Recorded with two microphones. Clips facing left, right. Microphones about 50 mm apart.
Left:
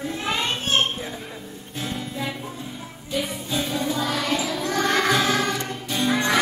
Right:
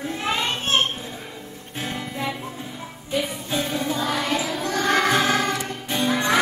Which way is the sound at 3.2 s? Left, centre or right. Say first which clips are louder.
Right 1 dB; centre.